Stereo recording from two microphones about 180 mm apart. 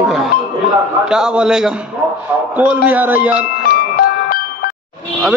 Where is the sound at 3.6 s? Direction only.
55° left (ahead or behind).